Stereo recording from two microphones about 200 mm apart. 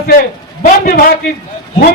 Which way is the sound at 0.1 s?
45° left (ahead or behind).